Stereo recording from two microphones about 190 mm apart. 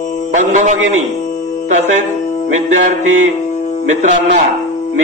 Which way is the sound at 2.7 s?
40° right (ahead or behind).